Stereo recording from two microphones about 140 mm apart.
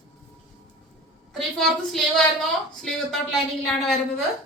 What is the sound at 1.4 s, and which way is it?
A woman's voice, centre (ahead or behind).